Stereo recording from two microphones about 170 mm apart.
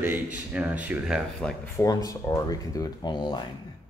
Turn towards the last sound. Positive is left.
turn(degrees=25)  # may be behind; listen again after turning